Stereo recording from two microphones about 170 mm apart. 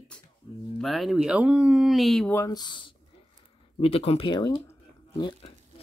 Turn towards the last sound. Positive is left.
turn(degrees=30)  # may be behind; listen again after turning